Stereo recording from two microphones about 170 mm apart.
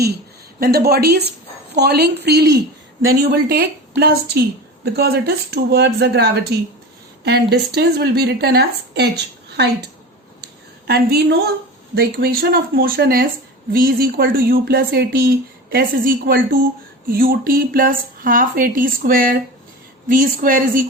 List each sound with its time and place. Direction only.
0.6 s a woman's voice: 65° right (ahead or behind)
11.9 s speech: 60° right (ahead or behind)